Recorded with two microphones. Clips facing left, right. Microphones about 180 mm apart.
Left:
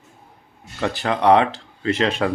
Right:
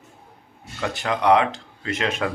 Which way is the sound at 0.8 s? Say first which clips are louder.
Left 3 dB; 30° left (ahead or behind).